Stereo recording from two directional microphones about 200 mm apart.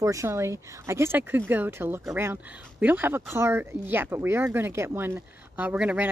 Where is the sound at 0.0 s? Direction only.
15° right (ahead or behind).